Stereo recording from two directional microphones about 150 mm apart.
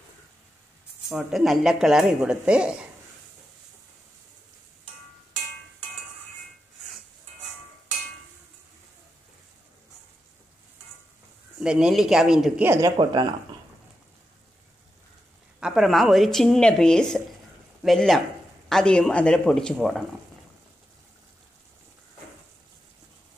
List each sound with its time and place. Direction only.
1.0 s speech: centre (ahead or behind)
11.6 s speech: 5° right (ahead or behind)
12.6 s speech: 20° right (ahead or behind)
12.9 s speech: 30° right (ahead or behind)
15.6 s speech: centre (ahead or behind)